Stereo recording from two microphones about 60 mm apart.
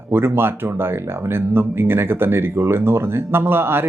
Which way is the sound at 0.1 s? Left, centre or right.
Right.